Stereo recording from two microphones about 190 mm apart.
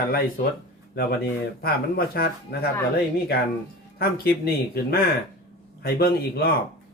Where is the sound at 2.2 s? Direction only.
55° left (ahead or behind).